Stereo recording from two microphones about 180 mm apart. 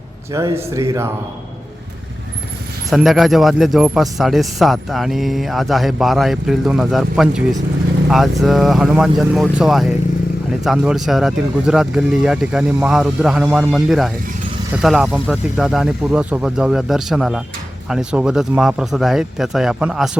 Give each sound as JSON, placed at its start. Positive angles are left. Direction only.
{"t": 0.3, "sound": "speech", "side_deg": -15}
{"t": 2.9, "sound": "speech", "side_deg": 0}